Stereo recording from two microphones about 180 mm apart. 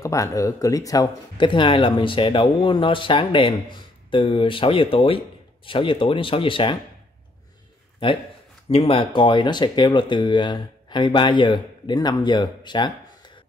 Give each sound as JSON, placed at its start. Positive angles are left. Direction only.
{"t": 0.0, "sound": "speech", "side_deg": 15}
{"t": 8.6, "sound": "speech", "side_deg": 30}